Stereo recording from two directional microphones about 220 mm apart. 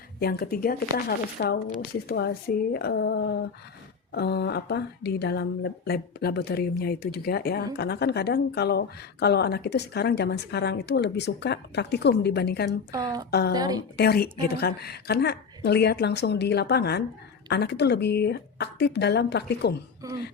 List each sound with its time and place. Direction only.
0.2 s speech: 45° left (ahead or behind)
12.9 s a woman's voice: 15° right (ahead or behind)
13.9 s speech: 45° left (ahead or behind)